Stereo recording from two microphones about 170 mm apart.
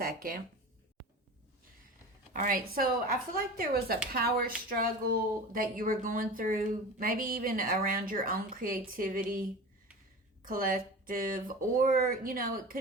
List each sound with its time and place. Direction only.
0.0 s speech: 55° right (ahead or behind)
2.3 s speech: 55° right (ahead or behind)
10.4 s speech: 55° right (ahead or behind)